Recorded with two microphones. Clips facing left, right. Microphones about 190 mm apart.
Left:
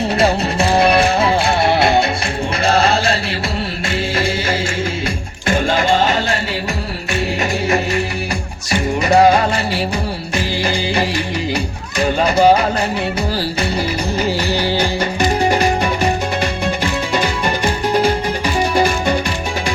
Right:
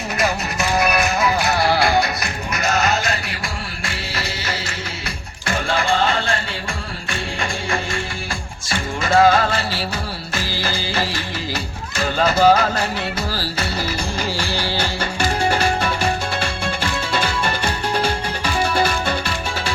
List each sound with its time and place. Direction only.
0.2 s music: 30° left (ahead or behind)
2.6 s chant: 30° left (ahead or behind)
3.8 s music: 25° left (ahead or behind)
8.7 s music: 15° left (ahead or behind)